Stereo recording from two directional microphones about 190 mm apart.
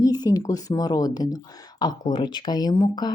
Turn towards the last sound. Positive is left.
turn(degrees=20)  # may be behind; listen again after turning